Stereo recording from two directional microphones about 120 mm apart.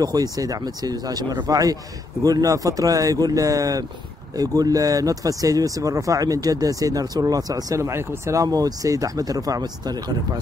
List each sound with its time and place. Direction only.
0.0 s speech: 30° right (ahead or behind)